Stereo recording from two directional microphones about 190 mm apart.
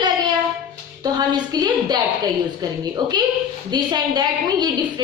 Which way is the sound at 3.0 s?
20° right (ahead or behind).